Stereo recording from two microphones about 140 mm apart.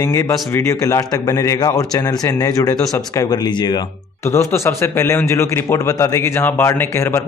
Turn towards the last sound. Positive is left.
turn(degrees=15)  # may be behind; listen again after turning